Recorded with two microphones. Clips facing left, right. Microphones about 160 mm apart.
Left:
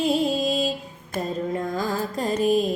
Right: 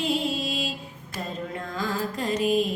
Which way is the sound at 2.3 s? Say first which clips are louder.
Left 3 dB; 40° left (ahead or behind).